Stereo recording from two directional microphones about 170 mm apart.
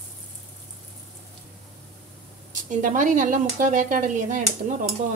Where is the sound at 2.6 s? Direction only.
50° right (ahead or behind).